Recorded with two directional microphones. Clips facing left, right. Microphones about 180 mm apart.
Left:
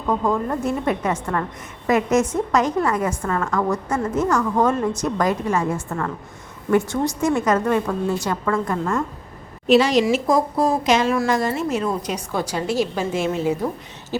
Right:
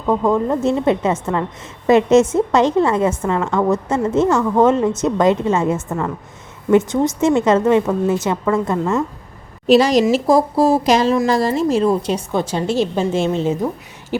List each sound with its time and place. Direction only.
0.1 s a woman's voice: 20° right (ahead or behind)
9.6 s a woman's voice: 40° right (ahead or behind)
14.1 s a sound: 15° right (ahead or behind)